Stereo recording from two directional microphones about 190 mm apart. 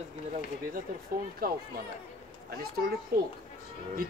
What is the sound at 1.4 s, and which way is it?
Speech, 50° right (ahead or behind).